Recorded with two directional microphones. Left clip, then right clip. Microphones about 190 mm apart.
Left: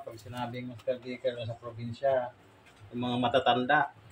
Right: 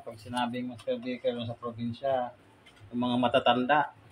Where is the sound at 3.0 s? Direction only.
30° right (ahead or behind).